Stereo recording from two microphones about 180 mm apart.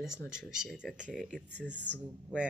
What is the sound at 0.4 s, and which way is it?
Speech, centre (ahead or behind).